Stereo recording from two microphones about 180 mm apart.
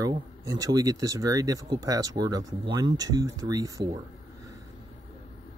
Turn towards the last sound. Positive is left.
turn(degrees=-20)  # may be behind; listen again after turning